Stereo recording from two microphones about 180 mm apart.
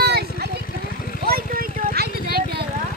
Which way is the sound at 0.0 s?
60° right (ahead or behind).